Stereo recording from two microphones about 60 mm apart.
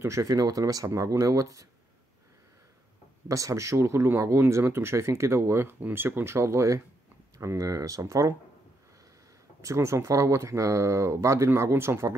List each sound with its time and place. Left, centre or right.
0.0 s speech: right
0.3 s speech: right
0.9 s speech: right
3.3 s speech: right
7.3 s speech: right
9.6 s speech: right